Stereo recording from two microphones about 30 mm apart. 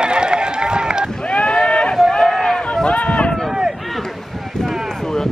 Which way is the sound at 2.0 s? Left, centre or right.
Centre.